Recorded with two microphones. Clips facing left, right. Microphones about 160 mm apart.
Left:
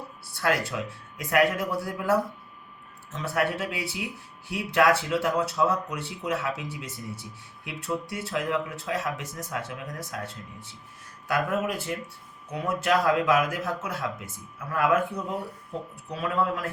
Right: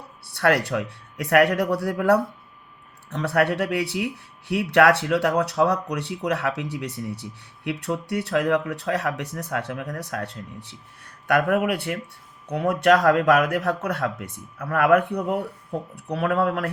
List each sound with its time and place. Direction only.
0.3 s speech: 70° right (ahead or behind)